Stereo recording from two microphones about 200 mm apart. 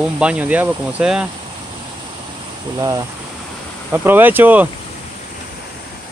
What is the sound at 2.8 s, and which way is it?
Speech, 20° right (ahead or behind).